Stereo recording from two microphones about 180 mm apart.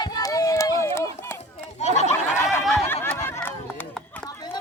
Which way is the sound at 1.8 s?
40° left (ahead or behind).